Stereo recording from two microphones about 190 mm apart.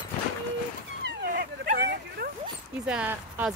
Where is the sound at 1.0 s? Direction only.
55° right (ahead or behind).